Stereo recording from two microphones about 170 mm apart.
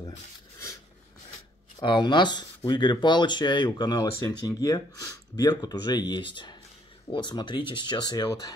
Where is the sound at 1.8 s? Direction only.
25° left (ahead or behind).